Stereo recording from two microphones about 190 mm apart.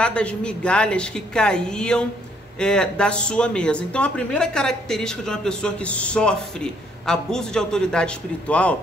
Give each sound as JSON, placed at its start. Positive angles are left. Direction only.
{"t": 0.0, "sound": "speech", "side_deg": 5}